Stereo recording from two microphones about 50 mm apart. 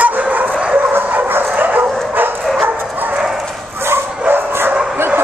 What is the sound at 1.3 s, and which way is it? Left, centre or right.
Dog, right.